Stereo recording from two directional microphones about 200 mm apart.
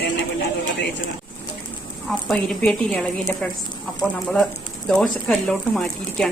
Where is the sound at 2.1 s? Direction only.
5° left (ahead or behind).